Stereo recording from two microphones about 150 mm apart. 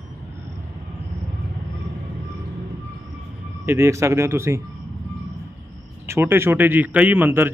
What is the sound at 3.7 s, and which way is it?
Speech, 20° right (ahead or behind).